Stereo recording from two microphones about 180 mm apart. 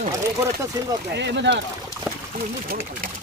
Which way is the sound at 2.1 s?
10° right (ahead or behind).